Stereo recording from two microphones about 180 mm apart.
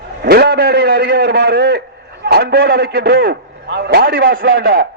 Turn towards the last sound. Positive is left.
turn(degrees=-60)  # may be behind; listen again after turning